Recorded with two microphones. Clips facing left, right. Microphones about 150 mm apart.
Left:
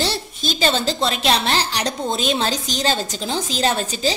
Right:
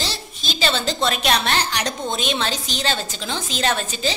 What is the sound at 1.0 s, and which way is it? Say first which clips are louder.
A woman's voice: right 1 dB; 30° left (ahead or behind).